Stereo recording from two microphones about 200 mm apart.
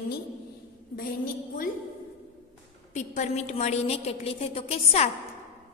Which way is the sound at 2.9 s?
35° left (ahead or behind).